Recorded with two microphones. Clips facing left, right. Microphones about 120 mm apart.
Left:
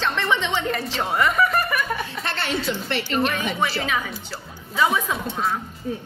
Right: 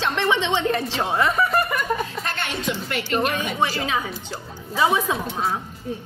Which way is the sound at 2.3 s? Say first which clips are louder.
Left 4 dB; 35° left (ahead or behind).